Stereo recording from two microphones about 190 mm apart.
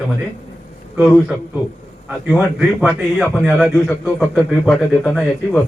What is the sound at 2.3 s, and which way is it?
A man's voice, 5° right (ahead or behind).